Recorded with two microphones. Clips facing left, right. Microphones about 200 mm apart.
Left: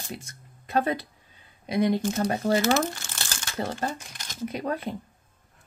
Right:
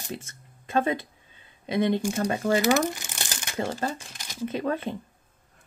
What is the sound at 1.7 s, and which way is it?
Speech, 25° right (ahead or behind).